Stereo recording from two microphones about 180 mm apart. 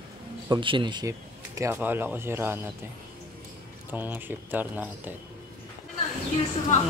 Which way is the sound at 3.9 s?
10° right (ahead or behind).